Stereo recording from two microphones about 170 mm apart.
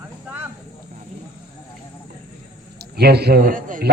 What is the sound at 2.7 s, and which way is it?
A man's voice, 70° right (ahead or behind).